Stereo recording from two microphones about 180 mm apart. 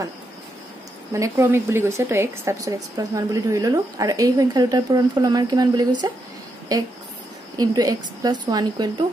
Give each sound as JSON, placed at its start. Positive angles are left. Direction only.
{"t": 1.1, "sound": "speech", "side_deg": -15}